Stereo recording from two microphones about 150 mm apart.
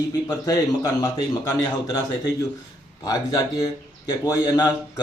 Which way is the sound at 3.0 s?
25° left (ahead or behind).